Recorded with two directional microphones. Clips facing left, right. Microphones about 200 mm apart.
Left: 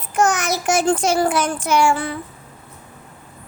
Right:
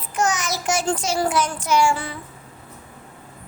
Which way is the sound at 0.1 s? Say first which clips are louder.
Left 4 dB; 55° left (ahead or behind).